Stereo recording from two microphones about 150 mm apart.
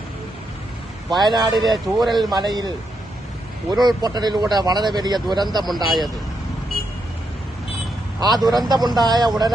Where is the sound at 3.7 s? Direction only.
25° right (ahead or behind).